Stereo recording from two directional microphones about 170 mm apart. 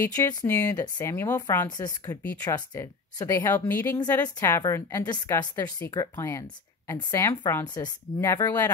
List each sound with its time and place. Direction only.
0.0 s a woman's voice: 20° left (ahead or behind)
1.7 s a woman's voice: 25° left (ahead or behind)